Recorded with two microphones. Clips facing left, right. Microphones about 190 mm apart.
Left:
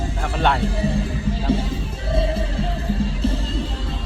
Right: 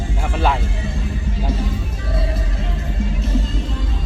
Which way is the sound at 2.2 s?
30° left (ahead or behind).